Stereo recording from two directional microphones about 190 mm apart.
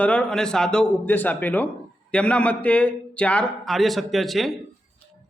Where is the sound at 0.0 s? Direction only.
5° left (ahead or behind).